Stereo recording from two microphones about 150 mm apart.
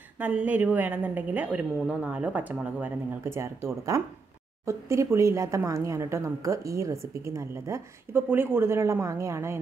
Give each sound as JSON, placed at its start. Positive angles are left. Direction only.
{"t": 0.2, "sound": "a woman's voice", "side_deg": -10}